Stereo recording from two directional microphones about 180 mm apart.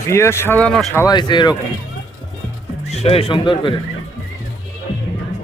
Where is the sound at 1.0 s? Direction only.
25° left (ahead or behind).